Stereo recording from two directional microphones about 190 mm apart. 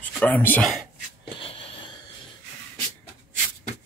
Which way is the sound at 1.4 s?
30° left (ahead or behind).